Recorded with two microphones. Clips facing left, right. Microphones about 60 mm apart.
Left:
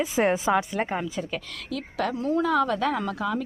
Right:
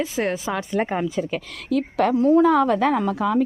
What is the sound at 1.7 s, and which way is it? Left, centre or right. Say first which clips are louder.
Speech: right 9 dB; right.